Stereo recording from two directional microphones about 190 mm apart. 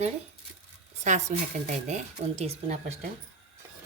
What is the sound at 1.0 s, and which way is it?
A woman's voice, 40° right (ahead or behind).